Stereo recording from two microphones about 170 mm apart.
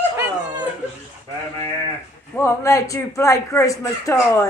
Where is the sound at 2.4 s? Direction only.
20° left (ahead or behind).